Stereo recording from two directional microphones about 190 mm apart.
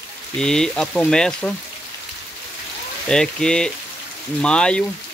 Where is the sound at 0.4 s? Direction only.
5° left (ahead or behind).